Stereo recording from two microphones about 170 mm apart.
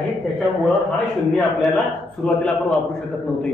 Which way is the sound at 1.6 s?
Centre (ahead or behind).